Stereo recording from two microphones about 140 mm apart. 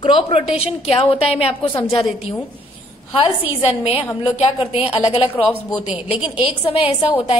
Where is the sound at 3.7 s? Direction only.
45° left (ahead or behind).